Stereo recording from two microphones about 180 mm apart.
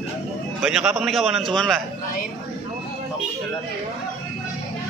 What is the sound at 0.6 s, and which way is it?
A man's voice, 5° right (ahead or behind).